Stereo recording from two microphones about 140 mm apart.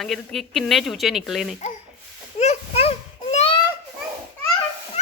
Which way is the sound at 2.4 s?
50° left (ahead or behind).